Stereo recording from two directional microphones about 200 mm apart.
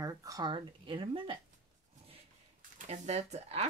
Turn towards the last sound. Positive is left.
turn(degrees=-30)  # may be behind; listen again after turning